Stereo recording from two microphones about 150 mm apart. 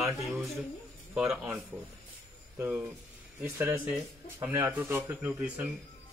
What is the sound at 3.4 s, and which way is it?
Speech, 15° right (ahead or behind).